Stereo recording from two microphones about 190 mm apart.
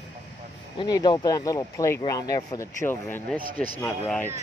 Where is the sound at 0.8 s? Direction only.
20° left (ahead or behind).